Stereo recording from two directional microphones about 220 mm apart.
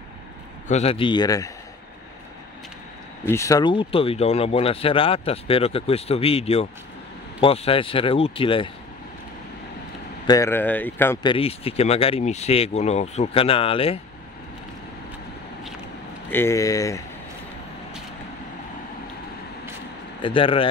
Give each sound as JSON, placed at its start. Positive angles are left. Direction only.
{"t": 0.7, "sound": "speech", "side_deg": 30}
{"t": 3.3, "sound": "speech", "side_deg": 15}
{"t": 10.2, "sound": "speech", "side_deg": 15}
{"t": 11.2, "sound": "speech", "side_deg": 25}
{"t": 16.3, "sound": "speech", "side_deg": 10}
{"t": 20.2, "sound": "speech", "side_deg": 25}